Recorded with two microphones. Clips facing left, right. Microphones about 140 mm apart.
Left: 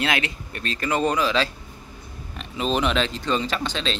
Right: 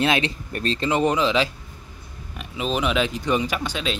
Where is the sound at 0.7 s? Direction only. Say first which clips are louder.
Right 1 dB; 20° right (ahead or behind).